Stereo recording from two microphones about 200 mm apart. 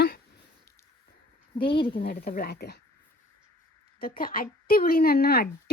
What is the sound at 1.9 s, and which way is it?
Speech, 45° left (ahead or behind).